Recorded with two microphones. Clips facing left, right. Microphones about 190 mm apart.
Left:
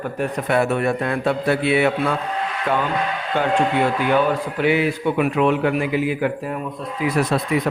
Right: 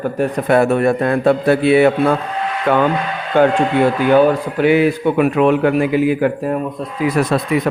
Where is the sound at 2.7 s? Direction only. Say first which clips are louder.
Right 7 dB; 65° right (ahead or behind).